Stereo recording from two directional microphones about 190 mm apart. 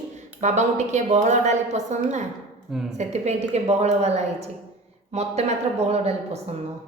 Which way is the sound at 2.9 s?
35° right (ahead or behind).